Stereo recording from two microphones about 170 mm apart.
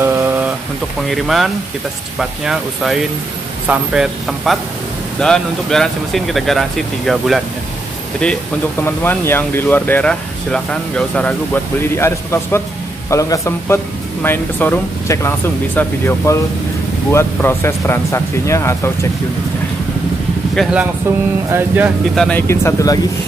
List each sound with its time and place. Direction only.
0.0 s a sound: 15° right (ahead or behind)
1.1 s speech: centre (ahead or behind)
8.2 s speech: 10° left (ahead or behind)
20.6 s speech: centre (ahead or behind)
21.5 s speech: 10° right (ahead or behind)
22.1 s speech: centre (ahead or behind)
22.5 s speech: 15° left (ahead or behind)